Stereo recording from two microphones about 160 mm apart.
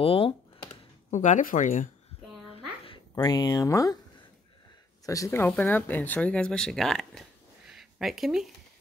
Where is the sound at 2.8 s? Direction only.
25° left (ahead or behind).